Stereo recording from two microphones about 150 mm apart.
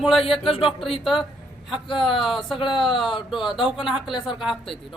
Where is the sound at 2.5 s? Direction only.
35° left (ahead or behind).